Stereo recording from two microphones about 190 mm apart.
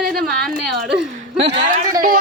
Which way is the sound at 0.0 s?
Centre (ahead or behind).